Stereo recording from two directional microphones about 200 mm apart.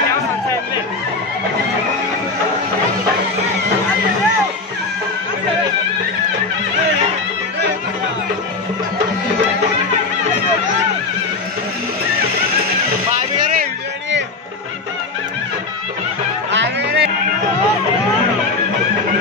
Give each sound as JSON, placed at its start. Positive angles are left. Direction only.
{"t": 13.1, "sound": "vehicle", "side_deg": -40}
{"t": 16.5, "sound": "music", "side_deg": -60}